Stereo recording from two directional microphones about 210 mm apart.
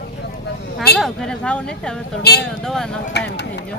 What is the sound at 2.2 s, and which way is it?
Speech, 50° left (ahead or behind).